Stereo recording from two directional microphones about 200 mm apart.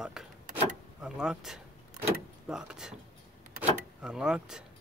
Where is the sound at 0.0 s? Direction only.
5° right (ahead or behind).